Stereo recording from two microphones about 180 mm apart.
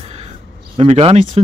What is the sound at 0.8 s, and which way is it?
Speech, 35° right (ahead or behind).